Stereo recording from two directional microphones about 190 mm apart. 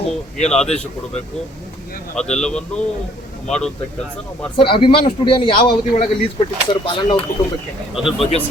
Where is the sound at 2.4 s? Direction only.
5° left (ahead or behind).